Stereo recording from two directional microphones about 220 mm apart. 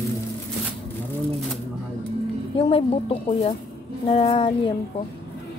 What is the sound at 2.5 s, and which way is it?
A woman's voice, 25° left (ahead or behind).